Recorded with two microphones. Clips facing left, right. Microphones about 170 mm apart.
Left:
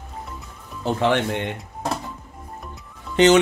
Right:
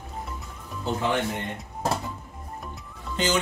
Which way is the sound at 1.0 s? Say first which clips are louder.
Left 7 dB; 85° left.